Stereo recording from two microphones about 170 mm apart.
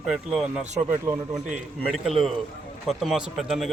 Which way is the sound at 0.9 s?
15° right (ahead or behind).